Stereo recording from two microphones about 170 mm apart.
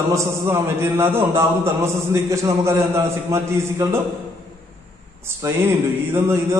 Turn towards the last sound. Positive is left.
turn(degrees=-15)  # may be behind; listen again after turning